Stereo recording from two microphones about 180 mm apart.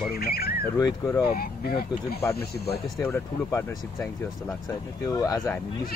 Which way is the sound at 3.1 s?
10° left (ahead or behind).